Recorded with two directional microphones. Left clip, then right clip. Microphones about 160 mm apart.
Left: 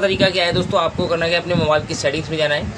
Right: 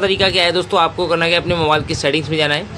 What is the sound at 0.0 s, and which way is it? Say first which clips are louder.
A man's voice: right 2 dB; 35° right (ahead or behind).